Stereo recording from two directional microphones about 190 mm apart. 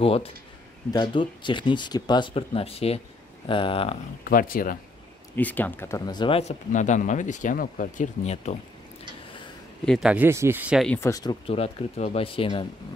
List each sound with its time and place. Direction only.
0.0 s speech: 30° left (ahead or behind)
4.2 s speech: 50° left (ahead or behind)
5.3 s speech: 10° left (ahead or behind); by 8.5 s 35° left (ahead or behind)
9.8 s speech: 5° right (ahead or behind)
10.9 s speech: 15° left (ahead or behind)